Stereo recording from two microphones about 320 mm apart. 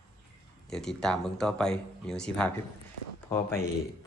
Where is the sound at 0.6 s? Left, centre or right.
Centre.